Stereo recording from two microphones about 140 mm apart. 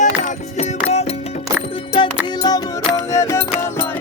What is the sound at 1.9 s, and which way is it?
Music, 35° left (ahead or behind).